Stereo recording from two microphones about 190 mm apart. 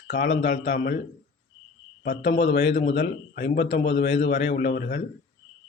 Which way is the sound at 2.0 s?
55° left (ahead or behind).